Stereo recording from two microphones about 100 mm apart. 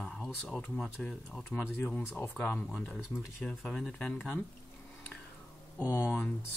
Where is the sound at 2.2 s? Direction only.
15° left (ahead or behind).